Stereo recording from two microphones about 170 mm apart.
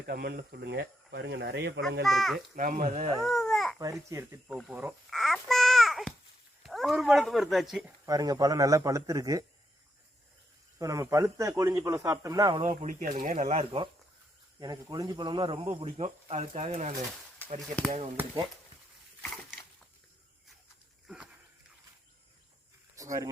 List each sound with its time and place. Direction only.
0.0 s speech: 65° right (ahead or behind); by 1.8 s 85° right
2.0 s a child's voice: centre (ahead or behind)
2.6 s speech: 55° right (ahead or behind)
3.2 s babbling: centre (ahead or behind)
4.1 s speech: 15° right (ahead or behind)
5.1 s babbling: centre (ahead or behind)
6.6 s speech: centre (ahead or behind)
8.0 s speech: 20° right (ahead or behind)
10.8 s speech: 20° right (ahead or behind)
12.6 s speech: 45° right (ahead or behind)
17.6 s a child's voice: centre (ahead or behind)
19.2 s a sound: centre (ahead or behind)
23.0 s speech: 20° right (ahead or behind)